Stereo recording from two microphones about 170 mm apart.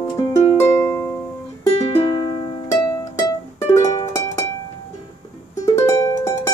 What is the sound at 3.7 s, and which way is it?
Music, 20° left (ahead or behind).